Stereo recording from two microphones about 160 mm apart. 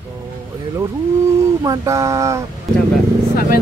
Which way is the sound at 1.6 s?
20° right (ahead or behind).